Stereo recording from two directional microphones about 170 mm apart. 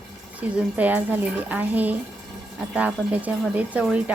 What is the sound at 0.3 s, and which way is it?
Speech, 10° right (ahead or behind).